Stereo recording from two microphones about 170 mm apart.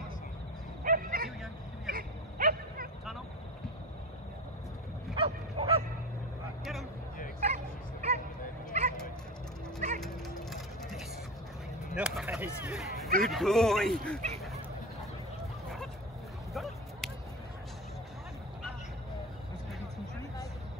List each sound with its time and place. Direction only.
0.8 s bow-wow: 55° right (ahead or behind)
1.9 s a sound: 60° right (ahead or behind)
5.1 s bow-wow: 35° right (ahead or behind)
6.6 s vehicle: centre (ahead or behind)
7.3 s music: 40° right (ahead or behind)
9.9 s vehicle: centre (ahead or behind)
11.9 s a sound: 5° right (ahead or behind)
13.2 s speech: centre (ahead or behind)
16.5 s a sound: centre (ahead or behind)